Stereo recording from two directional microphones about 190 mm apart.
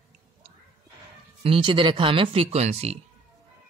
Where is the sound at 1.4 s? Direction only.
25° right (ahead or behind).